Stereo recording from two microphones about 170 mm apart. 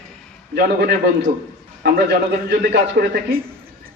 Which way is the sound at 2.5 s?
75° right (ahead or behind).